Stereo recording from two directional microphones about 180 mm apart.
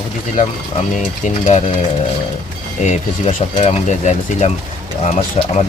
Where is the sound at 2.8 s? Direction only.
45° left (ahead or behind).